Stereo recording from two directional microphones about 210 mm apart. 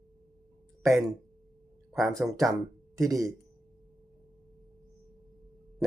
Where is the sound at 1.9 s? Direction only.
Centre (ahead or behind).